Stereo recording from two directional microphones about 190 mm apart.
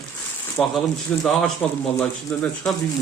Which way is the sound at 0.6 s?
Centre (ahead or behind).